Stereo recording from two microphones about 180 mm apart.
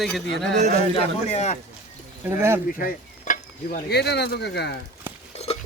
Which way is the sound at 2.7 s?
50° left (ahead or behind).